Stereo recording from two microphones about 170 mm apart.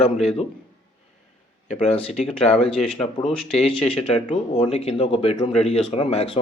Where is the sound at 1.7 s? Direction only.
45° left (ahead or behind).